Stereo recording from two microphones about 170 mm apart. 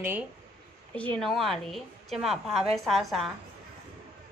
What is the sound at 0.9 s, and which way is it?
A woman's voice, 5° left (ahead or behind).